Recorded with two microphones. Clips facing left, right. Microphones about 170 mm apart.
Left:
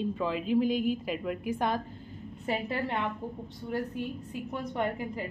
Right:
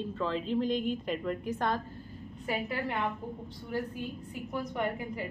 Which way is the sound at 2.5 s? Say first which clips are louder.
Left 2 dB; 30° left (ahead or behind).